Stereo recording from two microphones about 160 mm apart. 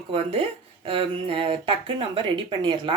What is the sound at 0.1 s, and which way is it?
Speech, 35° right (ahead or behind).